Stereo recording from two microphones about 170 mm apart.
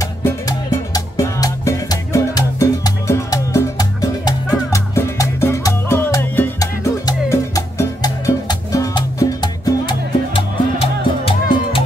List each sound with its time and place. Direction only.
0.0 s music: 20° left (ahead or behind)